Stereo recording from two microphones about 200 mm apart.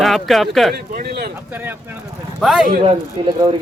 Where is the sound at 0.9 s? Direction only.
50° right (ahead or behind).